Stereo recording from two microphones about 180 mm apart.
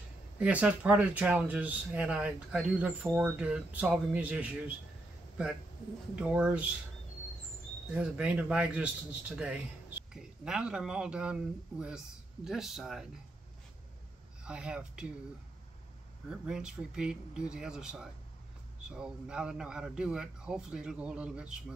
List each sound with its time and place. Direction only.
0.4 s speech: 10° right (ahead or behind)
6.1 s a man's voice: 5° right (ahead or behind)
7.9 s a man's voice: 5° right (ahead or behind)
12.4 s a man's voice: centre (ahead or behind)
14.4 s speech: 5° right (ahead or behind)
16.3 s a man's voice: 5° right (ahead or behind)